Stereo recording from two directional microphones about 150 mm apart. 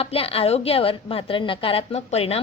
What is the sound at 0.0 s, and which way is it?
A woman's voice, 40° left (ahead or behind).